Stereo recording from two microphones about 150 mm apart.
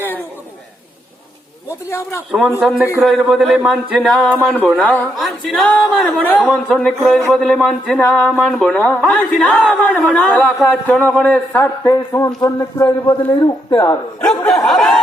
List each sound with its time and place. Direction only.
1.9 s a man's voice: 20° left (ahead or behind)
2.3 s a man's voice: centre (ahead or behind); by 12.9 s 20° left (ahead or behind)
13.1 s speech: 35° left (ahead or behind)
14.3 s a sound: 5° left (ahead or behind)